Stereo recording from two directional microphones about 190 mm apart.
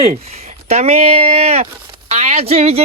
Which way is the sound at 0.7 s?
35° right (ahead or behind).